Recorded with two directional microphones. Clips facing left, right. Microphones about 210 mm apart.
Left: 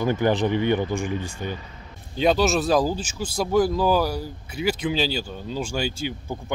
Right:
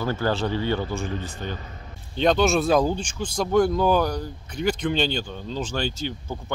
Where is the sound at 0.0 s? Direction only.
15° left (ahead or behind).